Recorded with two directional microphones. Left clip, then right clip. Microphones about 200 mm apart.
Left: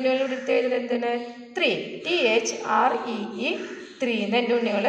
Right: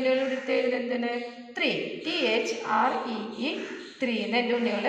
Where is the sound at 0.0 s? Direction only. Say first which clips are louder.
Left 2 dB; 50° left (ahead or behind).